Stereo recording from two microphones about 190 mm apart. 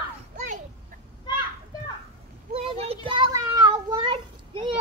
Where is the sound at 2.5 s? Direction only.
30° right (ahead or behind).